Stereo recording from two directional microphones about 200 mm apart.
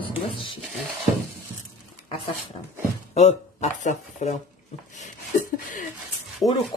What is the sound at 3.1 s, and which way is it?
Speech, 35° left (ahead or behind).